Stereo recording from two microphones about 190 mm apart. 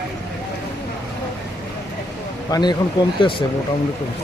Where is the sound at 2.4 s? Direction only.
20° left (ahead or behind).